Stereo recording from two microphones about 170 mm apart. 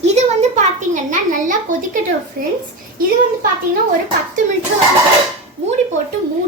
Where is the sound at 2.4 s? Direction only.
60° right (ahead or behind).